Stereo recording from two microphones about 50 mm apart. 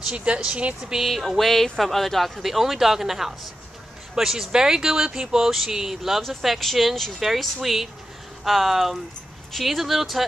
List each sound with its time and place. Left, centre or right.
0.1 s speech: right
0.8 s speech: centre